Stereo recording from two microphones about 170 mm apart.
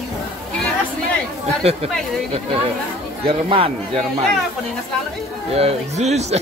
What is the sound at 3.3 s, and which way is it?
Speech, 35° right (ahead or behind).